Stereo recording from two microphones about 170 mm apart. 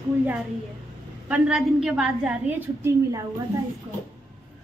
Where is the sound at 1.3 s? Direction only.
5° right (ahead or behind).